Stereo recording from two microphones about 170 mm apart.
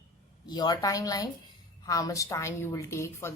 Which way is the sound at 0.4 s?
25° left (ahead or behind).